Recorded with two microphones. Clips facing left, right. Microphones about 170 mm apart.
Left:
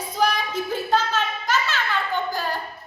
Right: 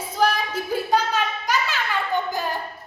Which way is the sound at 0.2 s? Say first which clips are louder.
Right 1 dB; 5° right (ahead or behind).